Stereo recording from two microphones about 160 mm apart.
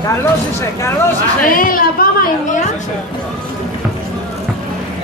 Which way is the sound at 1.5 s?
60° left (ahead or behind).